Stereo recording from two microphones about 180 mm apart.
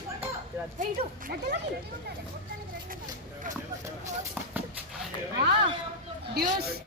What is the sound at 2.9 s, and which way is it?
Vehicle, 45° right (ahead or behind).